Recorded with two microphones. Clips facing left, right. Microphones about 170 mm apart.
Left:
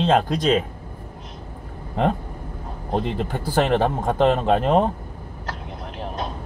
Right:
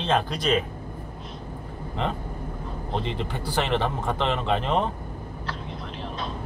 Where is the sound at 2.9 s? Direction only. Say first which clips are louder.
Left 6 dB; 45° left (ahead or behind).